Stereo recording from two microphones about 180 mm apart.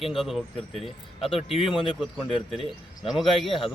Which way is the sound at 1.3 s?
35° left (ahead or behind).